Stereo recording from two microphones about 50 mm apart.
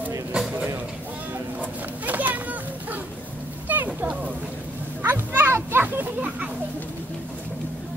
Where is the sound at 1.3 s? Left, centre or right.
Right.